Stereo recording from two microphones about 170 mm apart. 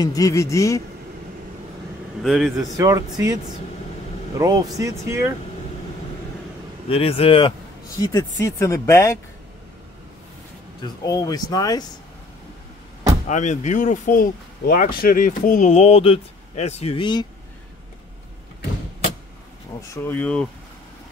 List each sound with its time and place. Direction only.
0.0 s speech: 20° left (ahead or behind)
2.2 s a man's voice: centre (ahead or behind)
2.8 s speech: 20° right (ahead or behind)
4.4 s speech: 25° right (ahead or behind)
6.9 s speech: 35° left (ahead or behind)
8.0 s speech: 20° left (ahead or behind)
10.8 s speech: 25° left (ahead or behind)
13.3 s speech: 45° left (ahead or behind); by 17.3 s 25° left (ahead or behind)
19.9 s speech: 10° left (ahead or behind)